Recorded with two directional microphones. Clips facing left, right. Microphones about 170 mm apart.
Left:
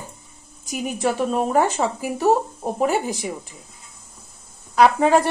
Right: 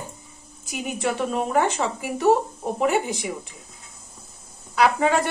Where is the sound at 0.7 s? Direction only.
35° left (ahead or behind).